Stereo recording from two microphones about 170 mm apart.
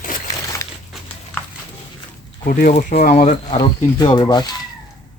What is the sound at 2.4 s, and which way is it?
Speech, 55° left (ahead or behind).